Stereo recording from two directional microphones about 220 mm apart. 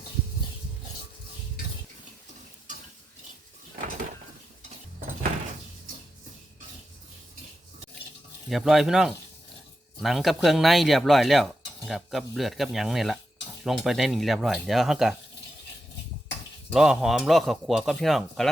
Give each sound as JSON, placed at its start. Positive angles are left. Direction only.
{"t": 8.4, "sound": "speech", "side_deg": 0}
{"t": 16.7, "sound": "speech", "side_deg": 0}